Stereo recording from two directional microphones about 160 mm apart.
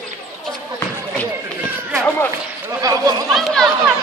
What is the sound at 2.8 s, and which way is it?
Speech, 20° right (ahead or behind).